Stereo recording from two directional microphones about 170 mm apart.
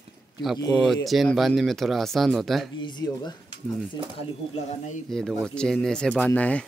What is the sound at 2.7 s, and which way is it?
Speech, 25° left (ahead or behind).